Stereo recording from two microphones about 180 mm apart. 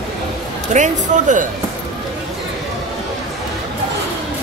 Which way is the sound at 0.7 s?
45° right (ahead or behind).